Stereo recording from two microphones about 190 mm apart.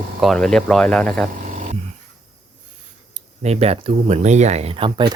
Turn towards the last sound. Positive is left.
turn(degrees=-25)  # may be behind; listen again after turning